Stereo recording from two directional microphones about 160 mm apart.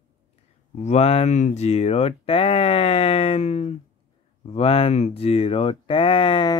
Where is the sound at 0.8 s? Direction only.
40° left (ahead or behind).